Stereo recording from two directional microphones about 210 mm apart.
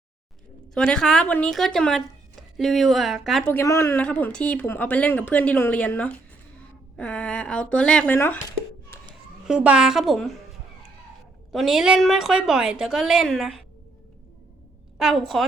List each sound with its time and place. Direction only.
0.7 s speech: 5° left (ahead or behind)
3.5 s a woman's voice: 15° left (ahead or behind)
8.9 s a sound: 10° left (ahead or behind)
9.5 s speech: 5° right (ahead or behind)
11.5 s speech: centre (ahead or behind)
14.9 s speech: centre (ahead or behind)